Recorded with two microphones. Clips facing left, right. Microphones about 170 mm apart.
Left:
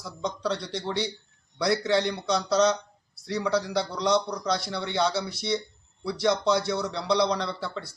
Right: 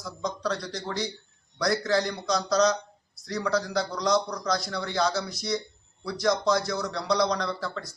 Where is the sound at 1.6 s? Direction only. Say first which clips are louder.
Left 1 dB; 5° left (ahead or behind).